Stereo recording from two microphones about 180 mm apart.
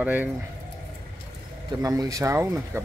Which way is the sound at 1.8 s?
20° right (ahead or behind).